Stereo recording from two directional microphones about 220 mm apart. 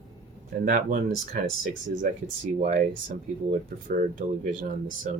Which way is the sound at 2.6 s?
35° right (ahead or behind).